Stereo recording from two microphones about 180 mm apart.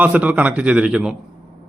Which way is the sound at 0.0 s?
10° right (ahead or behind).